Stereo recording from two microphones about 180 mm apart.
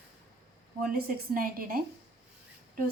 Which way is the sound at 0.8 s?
55° right (ahead or behind).